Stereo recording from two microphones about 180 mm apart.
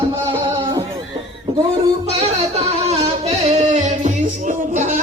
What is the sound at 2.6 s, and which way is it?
Music, 35° right (ahead or behind).